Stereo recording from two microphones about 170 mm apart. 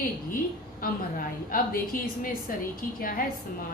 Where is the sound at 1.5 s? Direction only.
55° left (ahead or behind).